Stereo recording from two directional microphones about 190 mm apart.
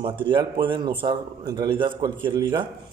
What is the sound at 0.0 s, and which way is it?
Speech, 25° right (ahead or behind).